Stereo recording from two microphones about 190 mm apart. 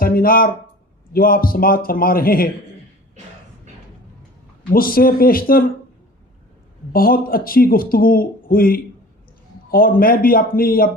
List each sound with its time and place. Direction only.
0.0 s speech: 50° left (ahead or behind)
4.7 s speech: 50° left (ahead or behind)
6.9 s speech: 50° left (ahead or behind)